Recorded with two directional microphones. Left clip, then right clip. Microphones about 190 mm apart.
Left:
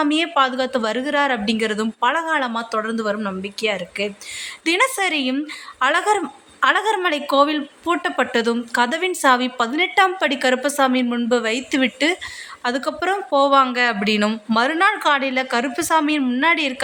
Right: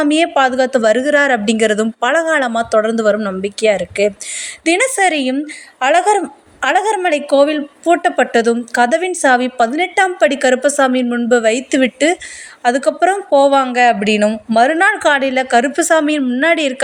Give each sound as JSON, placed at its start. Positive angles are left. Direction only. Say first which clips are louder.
{"t": 0.0, "sound": "a woman's voice", "louder": "right 5 dB", "side_deg": -20}